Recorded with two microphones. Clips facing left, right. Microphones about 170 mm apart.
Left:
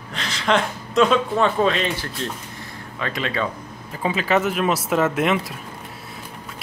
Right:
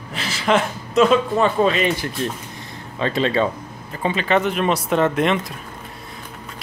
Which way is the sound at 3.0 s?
30° right (ahead or behind).